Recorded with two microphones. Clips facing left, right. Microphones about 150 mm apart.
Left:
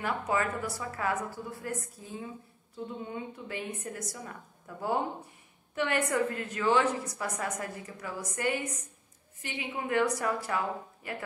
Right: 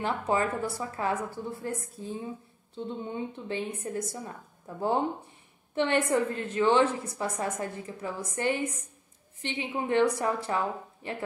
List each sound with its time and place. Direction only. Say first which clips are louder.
0.0 s a woman's voice: right 3 dB; 30° right (ahead or behind)